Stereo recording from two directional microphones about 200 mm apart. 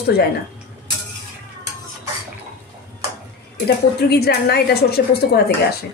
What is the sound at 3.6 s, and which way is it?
A woman's voice, 55° left (ahead or behind).